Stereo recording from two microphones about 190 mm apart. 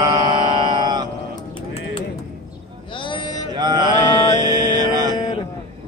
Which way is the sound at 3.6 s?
20° right (ahead or behind).